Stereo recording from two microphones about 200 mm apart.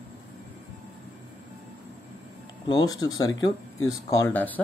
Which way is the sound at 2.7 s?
20° left (ahead or behind).